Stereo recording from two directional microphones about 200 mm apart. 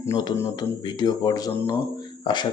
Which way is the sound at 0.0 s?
20° left (ahead or behind).